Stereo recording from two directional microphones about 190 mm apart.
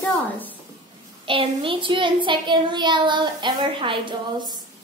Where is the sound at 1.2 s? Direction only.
25° right (ahead or behind).